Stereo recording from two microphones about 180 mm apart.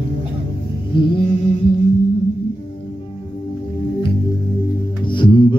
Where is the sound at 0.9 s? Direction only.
25° left (ahead or behind).